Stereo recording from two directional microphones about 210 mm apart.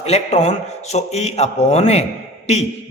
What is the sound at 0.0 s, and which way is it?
A man's voice, 30° left (ahead or behind).